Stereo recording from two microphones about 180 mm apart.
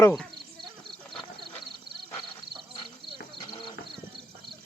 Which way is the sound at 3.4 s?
25° left (ahead or behind).